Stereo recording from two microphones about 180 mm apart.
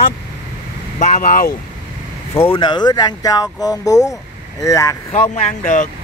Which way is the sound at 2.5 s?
25° left (ahead or behind).